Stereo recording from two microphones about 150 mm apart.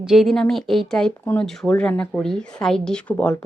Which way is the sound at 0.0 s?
5° right (ahead or behind).